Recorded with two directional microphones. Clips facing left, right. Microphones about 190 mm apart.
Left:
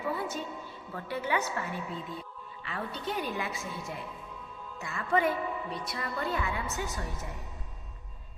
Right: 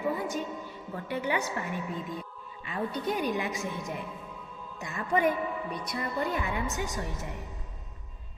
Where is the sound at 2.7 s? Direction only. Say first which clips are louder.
Right 5 dB; 15° right (ahead or behind).